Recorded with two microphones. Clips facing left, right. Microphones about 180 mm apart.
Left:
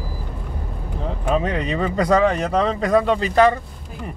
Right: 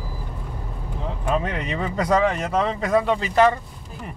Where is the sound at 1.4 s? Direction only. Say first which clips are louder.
Left 4 dB; 35° left (ahead or behind).